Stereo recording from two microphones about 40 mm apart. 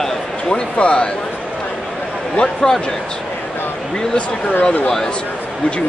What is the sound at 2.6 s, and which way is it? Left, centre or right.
Speech, centre.